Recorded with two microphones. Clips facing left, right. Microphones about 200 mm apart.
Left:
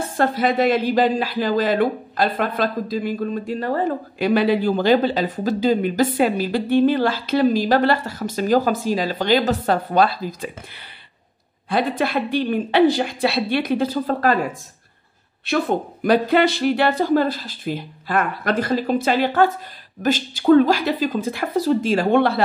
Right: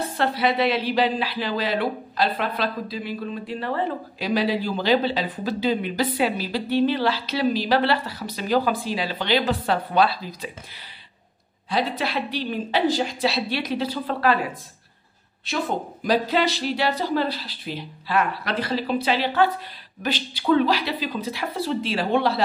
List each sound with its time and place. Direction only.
0.0 s speech: 45° left (ahead or behind)
11.7 s speech: 50° left (ahead or behind)
15.4 s speech: 60° left (ahead or behind)